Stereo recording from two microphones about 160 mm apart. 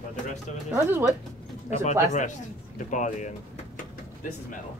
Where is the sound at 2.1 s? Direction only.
50° left (ahead or behind).